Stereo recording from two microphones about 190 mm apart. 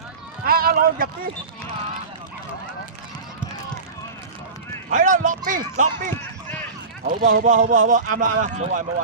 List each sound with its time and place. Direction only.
0.4 s speech: 50° right (ahead or behind)
4.9 s speech: 45° right (ahead or behind)